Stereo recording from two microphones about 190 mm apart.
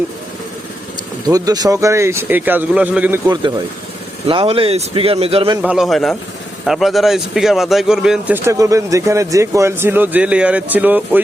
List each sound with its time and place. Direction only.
1.3 s speech: 20° right (ahead or behind)
4.3 s speech: 30° right (ahead or behind)
5.6 s a man's voice: centre (ahead or behind)
8.4 s speech: 15° right (ahead or behind)